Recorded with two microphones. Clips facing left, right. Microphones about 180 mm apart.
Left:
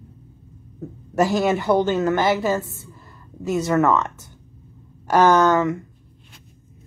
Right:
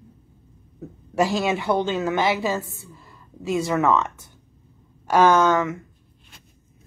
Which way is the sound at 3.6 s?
Centre (ahead or behind).